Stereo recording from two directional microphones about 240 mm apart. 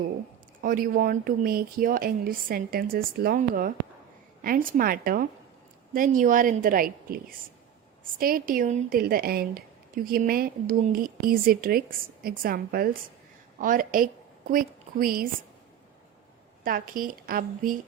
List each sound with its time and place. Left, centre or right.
0.6 s a woman's voice: right
16.6 s a woman's voice: right